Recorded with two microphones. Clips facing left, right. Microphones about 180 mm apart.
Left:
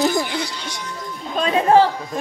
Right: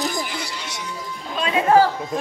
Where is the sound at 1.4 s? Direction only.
35° left (ahead or behind).